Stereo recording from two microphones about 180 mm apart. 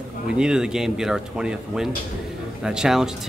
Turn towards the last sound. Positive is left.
turn(degrees=-5)  # may be behind; listen again after turning